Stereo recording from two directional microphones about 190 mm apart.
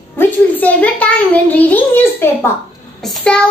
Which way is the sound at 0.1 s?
10° left (ahead or behind).